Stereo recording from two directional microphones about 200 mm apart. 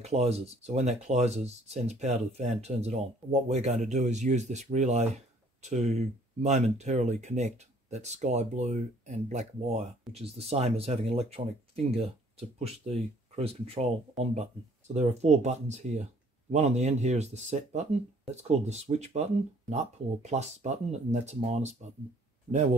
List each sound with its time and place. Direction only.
0.0 s speech: 30° right (ahead or behind)
14.2 s speech: centre (ahead or behind)
15.0 s speech: 35° right (ahead or behind)